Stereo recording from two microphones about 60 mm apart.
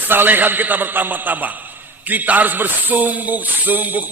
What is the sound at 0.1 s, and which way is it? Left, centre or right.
A man's voice, right.